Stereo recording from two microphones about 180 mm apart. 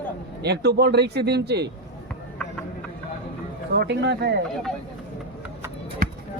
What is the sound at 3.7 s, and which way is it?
Speech, 70° right (ahead or behind).